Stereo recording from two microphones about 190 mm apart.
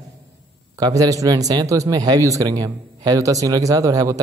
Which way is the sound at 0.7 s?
20° right (ahead or behind).